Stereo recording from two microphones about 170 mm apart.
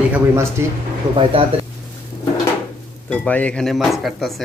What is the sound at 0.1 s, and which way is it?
Speech, 15° right (ahead or behind).